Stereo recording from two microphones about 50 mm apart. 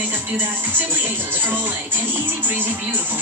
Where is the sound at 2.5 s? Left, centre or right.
Right.